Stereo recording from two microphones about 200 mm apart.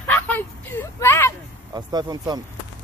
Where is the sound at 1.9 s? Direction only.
20° right (ahead or behind).